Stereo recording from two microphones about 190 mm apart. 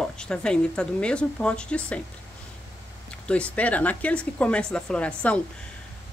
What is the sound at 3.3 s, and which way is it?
Speech, 5° left (ahead or behind).